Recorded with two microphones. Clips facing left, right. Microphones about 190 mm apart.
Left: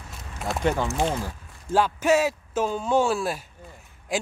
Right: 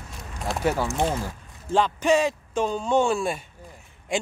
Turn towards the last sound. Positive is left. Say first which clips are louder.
# right 1 dB
turn(degrees=0)  # may be behind; listen again after turning